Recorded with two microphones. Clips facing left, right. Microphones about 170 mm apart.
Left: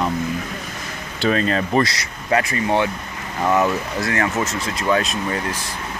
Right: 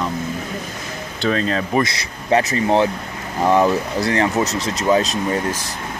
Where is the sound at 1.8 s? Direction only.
25° right (ahead or behind).